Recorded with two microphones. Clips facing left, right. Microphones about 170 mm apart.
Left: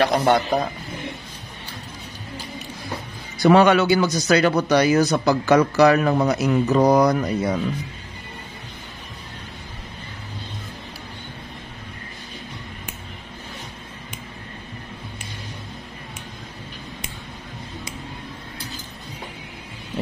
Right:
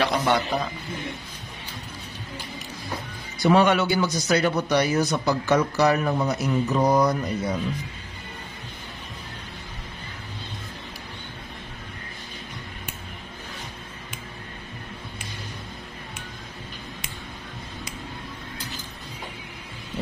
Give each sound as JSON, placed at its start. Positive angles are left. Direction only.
{"t": 0.0, "sound": "a man's voice", "side_deg": 50}
{"t": 3.4, "sound": "speech", "side_deg": 80}